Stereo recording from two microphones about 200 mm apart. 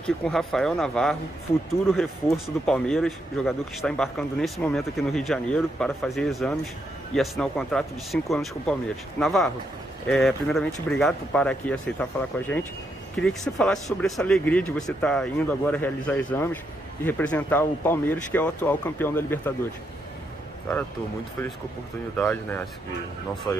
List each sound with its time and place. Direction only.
0.0 s speech: centre (ahead or behind)
22.1 s speech: 10° left (ahead or behind)